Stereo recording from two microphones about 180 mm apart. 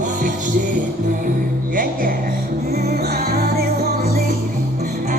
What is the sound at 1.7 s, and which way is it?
Music, 50° right (ahead or behind).